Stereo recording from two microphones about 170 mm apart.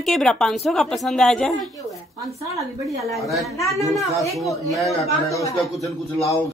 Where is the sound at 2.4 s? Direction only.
20° right (ahead or behind).